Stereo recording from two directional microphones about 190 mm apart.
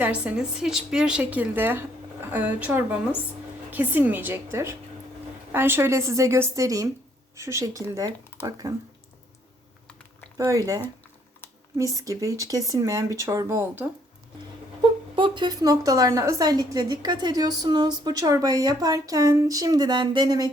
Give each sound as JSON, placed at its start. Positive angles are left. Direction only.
{"t": 0.0, "sound": "speech", "side_deg": -5}
{"t": 10.3, "sound": "speech", "side_deg": -15}
{"t": 11.8, "sound": "speech", "side_deg": -15}
{"t": 14.8, "sound": "speech", "side_deg": -25}